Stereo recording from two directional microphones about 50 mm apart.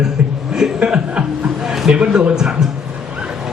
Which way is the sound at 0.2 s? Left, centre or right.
Right.